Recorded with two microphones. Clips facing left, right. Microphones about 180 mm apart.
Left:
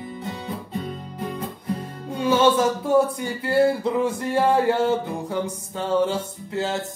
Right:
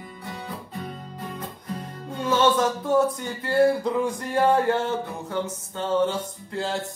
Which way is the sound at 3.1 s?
10° left (ahead or behind).